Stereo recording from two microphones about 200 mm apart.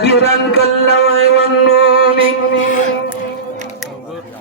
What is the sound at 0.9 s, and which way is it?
Mantra, 30° right (ahead or behind).